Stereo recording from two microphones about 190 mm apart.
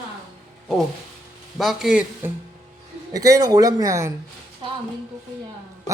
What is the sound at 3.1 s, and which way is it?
Speech, 20° right (ahead or behind).